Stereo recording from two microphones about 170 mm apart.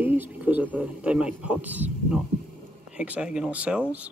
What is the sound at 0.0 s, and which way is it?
Speech, 10° right (ahead or behind).